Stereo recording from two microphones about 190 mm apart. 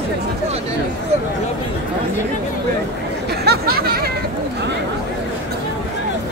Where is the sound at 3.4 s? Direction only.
55° right (ahead or behind).